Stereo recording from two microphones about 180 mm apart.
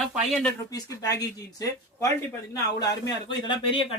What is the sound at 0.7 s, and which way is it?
Speech, 20° left (ahead or behind).